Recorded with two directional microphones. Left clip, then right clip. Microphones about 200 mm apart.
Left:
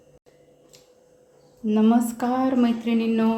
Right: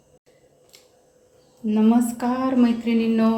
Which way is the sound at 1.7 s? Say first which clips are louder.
Right 1 dB; 15° left (ahead or behind).